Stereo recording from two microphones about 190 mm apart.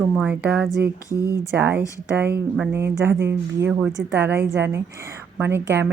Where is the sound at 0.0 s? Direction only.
10° right (ahead or behind).